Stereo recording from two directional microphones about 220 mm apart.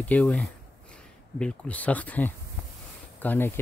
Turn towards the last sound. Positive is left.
turn(degrees=10)  # may be behind; listen again after turning